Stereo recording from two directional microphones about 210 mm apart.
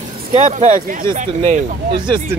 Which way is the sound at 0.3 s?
30° right (ahead or behind).